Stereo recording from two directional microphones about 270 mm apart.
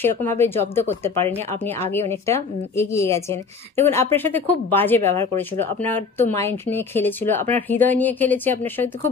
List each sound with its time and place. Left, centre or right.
0.0 s speech: centre
5.3 s speech: right
5.9 s speech: centre